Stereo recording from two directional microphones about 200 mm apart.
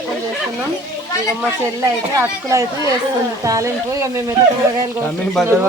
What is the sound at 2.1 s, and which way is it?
A woman's voice, 15° right (ahead or behind).